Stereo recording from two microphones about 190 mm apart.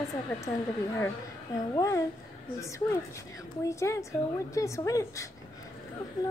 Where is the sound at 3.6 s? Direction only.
15° left (ahead or behind).